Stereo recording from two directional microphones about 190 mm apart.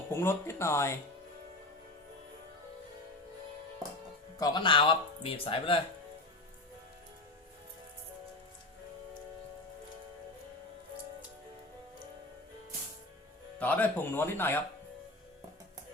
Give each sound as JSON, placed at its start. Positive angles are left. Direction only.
{"t": 0.1, "sound": "speech", "side_deg": 15}
{"t": 4.4, "sound": "speech", "side_deg": 20}
{"t": 13.6, "sound": "speech", "side_deg": 10}